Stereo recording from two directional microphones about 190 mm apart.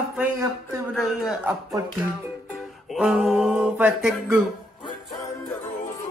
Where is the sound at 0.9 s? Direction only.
Centre (ahead or behind).